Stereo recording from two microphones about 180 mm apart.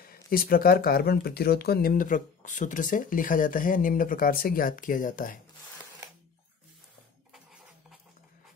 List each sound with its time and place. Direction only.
0.0 s speech: 55° left (ahead or behind)